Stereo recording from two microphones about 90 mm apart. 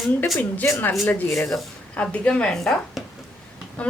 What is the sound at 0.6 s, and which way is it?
Speech, 30° left (ahead or behind).